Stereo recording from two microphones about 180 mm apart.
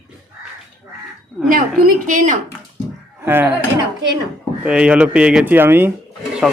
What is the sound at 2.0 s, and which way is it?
Speech, 45° right (ahead or behind).